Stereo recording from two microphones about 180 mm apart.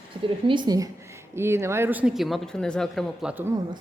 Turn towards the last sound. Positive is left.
turn(degrees=-10)  # may be behind; listen again after turning